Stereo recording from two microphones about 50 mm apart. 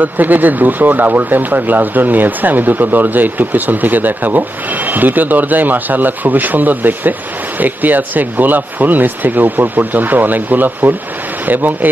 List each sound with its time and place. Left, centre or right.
0.0 s speech: right